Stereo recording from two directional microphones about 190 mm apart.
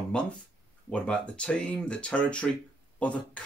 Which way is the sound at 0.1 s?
5° left (ahead or behind).